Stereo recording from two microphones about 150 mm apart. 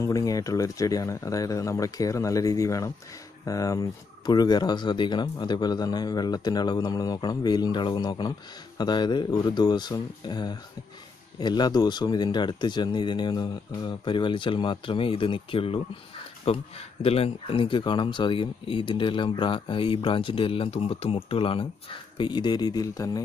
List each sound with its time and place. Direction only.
0.0 s speech: 25° left (ahead or behind)